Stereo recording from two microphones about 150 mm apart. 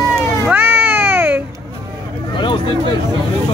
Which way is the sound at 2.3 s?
30° left (ahead or behind).